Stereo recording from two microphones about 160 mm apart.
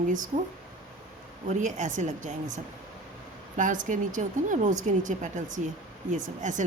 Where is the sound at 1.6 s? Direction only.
50° right (ahead or behind).